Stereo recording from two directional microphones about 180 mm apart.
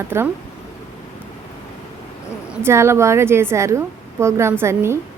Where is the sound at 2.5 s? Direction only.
15° right (ahead or behind).